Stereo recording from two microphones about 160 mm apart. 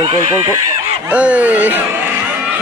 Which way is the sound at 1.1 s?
10° right (ahead or behind).